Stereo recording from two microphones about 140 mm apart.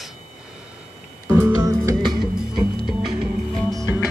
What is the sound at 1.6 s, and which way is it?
Music, 25° right (ahead or behind).